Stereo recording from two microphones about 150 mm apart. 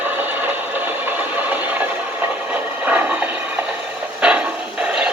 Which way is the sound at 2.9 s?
10° right (ahead or behind).